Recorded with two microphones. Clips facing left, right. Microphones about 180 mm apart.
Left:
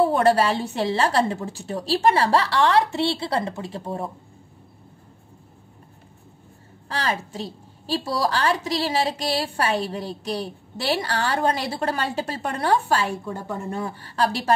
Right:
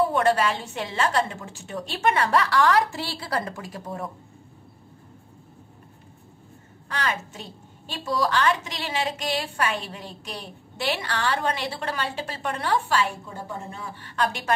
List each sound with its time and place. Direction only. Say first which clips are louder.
0.0 s a woman's voice: left 3 dB; 35° left (ahead or behind)
6.9 s a woman's voice: left 3 dB; 30° left (ahead or behind)